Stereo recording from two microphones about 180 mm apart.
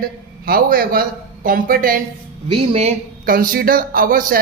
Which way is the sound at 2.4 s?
35° right (ahead or behind).